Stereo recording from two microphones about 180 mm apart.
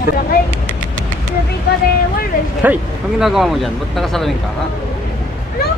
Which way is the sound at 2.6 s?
5° right (ahead or behind).